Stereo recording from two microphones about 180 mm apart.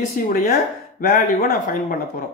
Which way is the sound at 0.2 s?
50° left (ahead or behind).